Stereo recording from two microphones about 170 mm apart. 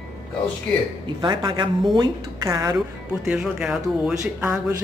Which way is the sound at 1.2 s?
25° right (ahead or behind).